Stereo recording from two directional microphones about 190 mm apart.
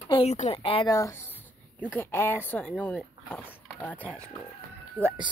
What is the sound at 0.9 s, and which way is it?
Speech, 15° left (ahead or behind).